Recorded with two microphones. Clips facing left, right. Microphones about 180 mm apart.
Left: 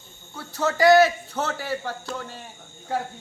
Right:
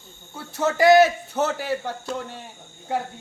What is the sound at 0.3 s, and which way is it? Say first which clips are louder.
Speech: right 2 dB; 25° right (ahead or behind).